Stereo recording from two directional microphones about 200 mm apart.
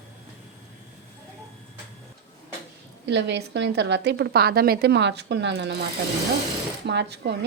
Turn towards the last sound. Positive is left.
turn(degrees=-60)  # may be behind; listen again after turning